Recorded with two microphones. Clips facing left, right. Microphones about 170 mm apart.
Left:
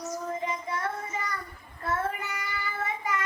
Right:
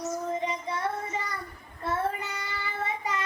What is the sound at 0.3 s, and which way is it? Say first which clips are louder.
Child singing: right 2 dB; 25° right (ahead or behind).